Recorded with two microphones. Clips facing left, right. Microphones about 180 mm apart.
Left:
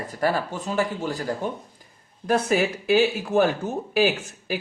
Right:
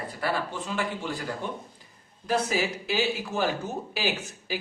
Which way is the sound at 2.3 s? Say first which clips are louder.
Left 5 dB; 55° left (ahead or behind).